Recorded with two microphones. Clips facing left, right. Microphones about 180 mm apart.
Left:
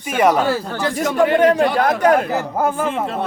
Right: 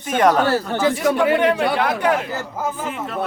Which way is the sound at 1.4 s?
45° left (ahead or behind).